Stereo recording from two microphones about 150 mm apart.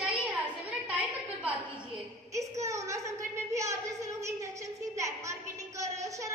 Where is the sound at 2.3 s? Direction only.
20° right (ahead or behind).